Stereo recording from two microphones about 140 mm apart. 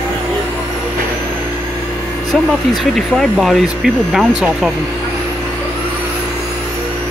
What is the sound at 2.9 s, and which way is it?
Speech, centre (ahead or behind).